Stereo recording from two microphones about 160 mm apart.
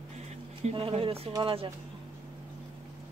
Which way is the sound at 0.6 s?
40° right (ahead or behind).